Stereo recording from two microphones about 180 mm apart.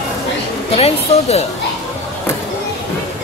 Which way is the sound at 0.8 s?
35° left (ahead or behind).